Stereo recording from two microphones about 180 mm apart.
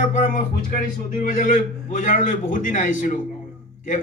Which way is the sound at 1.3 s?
50° left (ahead or behind).